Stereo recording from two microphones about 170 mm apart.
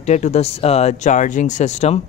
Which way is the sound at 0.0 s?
40° left (ahead or behind).